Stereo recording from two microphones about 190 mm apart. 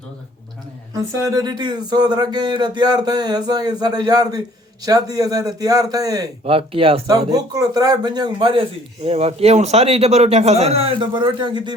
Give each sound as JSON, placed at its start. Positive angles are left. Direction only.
{"t": 0.9, "sound": "a man's voice", "side_deg": -20}